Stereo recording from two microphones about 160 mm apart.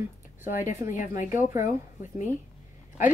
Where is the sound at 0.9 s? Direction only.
55° left (ahead or behind).